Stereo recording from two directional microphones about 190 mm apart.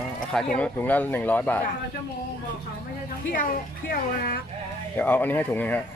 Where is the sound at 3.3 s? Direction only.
45° left (ahead or behind).